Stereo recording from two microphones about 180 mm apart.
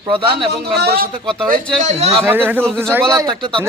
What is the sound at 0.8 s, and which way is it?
Speech, 60° right (ahead or behind).